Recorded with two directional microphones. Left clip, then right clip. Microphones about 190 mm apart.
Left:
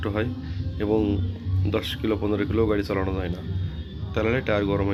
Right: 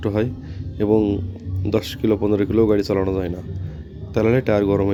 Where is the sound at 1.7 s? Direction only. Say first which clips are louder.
Right 6 dB; 55° right (ahead or behind).